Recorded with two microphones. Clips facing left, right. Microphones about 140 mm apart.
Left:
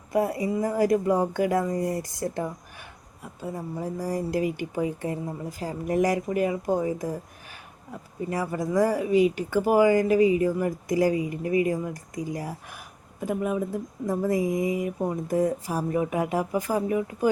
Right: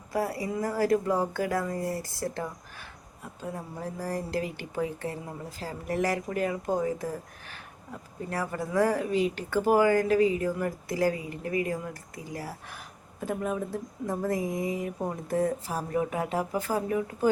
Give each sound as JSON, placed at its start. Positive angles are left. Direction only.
{"t": 0.1, "sound": "a woman's voice", "side_deg": 20}
{"t": 8.3, "sound": "a woman's voice", "side_deg": 15}